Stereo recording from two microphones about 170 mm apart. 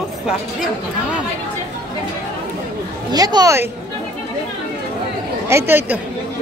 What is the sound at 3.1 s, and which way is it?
Speech, 25° right (ahead or behind).